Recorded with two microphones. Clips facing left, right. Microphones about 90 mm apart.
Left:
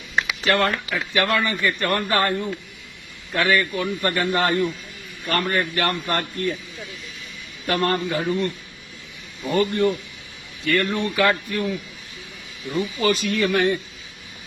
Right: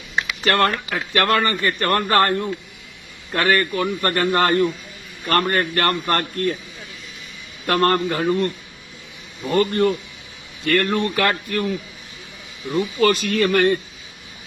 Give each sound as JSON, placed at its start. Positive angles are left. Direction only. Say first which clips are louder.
{"t": 0.4, "sound": "speech", "louder": "right 3 dB", "side_deg": -55}
{"t": 7.7, "sound": "speech", "louder": "right 4 dB", "side_deg": -55}
{"t": 9.5, "sound": "a man's voice", "louder": "right 2 dB", "side_deg": -50}
{"t": 13.0, "sound": "speech", "louder": "right 3 dB", "side_deg": -60}